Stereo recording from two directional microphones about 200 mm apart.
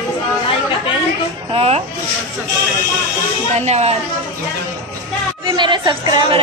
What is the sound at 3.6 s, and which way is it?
Speech, 30° right (ahead or behind).